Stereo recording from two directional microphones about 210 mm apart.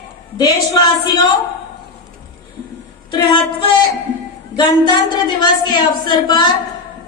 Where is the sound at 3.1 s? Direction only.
20° left (ahead or behind).